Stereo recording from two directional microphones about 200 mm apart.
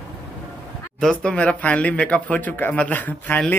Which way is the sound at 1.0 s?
5° left (ahead or behind).